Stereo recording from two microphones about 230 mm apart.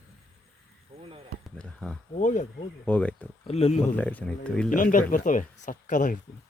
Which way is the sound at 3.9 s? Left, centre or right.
Centre.